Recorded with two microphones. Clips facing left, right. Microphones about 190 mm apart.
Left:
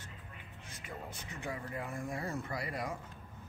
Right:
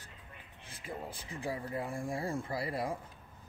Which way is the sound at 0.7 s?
30° right (ahead or behind).